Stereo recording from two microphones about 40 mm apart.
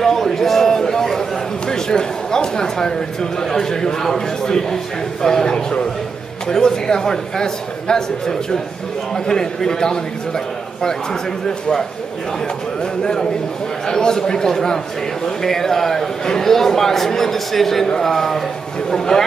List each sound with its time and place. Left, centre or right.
0.0 s a sound: centre
1.7 s a man's voice: centre
13.0 s a man's voice: centre